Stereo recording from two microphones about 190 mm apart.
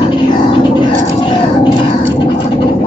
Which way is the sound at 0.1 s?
25° left (ahead or behind).